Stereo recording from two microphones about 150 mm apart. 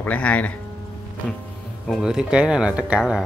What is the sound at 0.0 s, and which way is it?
Speech, 10° left (ahead or behind).